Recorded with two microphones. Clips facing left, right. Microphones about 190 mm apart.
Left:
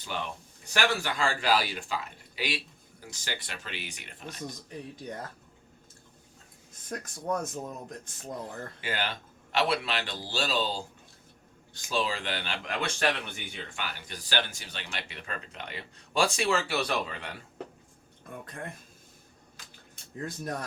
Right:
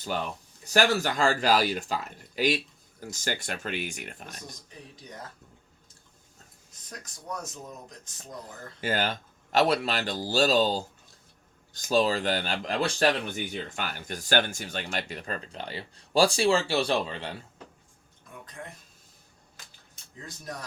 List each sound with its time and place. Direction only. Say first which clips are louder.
0.1 s speech: right 3 dB; 40° right (ahead or behind)
6.8 s speech: left 7 dB; 55° left (ahead or behind)
8.8 s speech: right 6 dB; 45° right (ahead or behind)
18.4 s speech: left 2 dB; 55° left (ahead or behind)
20.2 s speech: left 5 dB; 55° left (ahead or behind)